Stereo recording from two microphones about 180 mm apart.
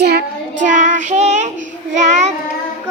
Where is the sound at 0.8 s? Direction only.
40° right (ahead or behind).